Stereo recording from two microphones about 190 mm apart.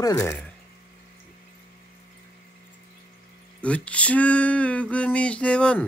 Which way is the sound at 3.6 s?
5° left (ahead or behind).